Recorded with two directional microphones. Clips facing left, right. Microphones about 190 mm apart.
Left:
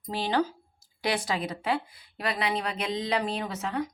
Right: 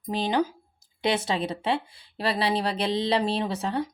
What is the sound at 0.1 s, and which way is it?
Speech, 15° right (ahead or behind).